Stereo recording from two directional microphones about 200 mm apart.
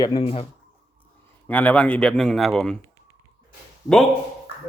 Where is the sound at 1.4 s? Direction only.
10° left (ahead or behind).